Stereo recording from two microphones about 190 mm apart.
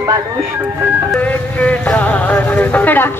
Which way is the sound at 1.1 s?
5° left (ahead or behind).